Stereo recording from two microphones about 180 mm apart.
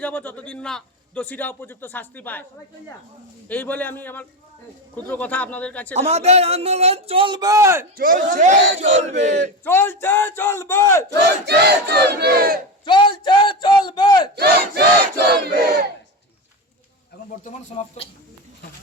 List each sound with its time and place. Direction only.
0.0 s a man's voice: 10° left (ahead or behind)
3.5 s a man's voice: 10° left (ahead or behind)
6.0 s speech: 35° right (ahead or behind); by 7.9 s 15° right (ahead or behind)
7.9 s speech: 50° right (ahead or behind)
9.6 s a man's voice: 10° left (ahead or behind)
11.1 s battle cry: 65° right (ahead or behind)
12.8 s speech: 25° left (ahead or behind)
15.1 s battle cry: 60° right (ahead or behind)
17.4 s speech: 40° left (ahead or behind)